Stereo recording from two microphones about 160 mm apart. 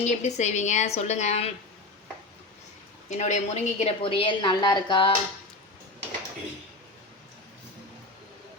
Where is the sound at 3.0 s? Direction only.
45° left (ahead or behind); by 5.1 s 30° left (ahead or behind).